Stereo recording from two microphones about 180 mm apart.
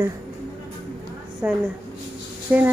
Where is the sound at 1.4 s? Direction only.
10° right (ahead or behind).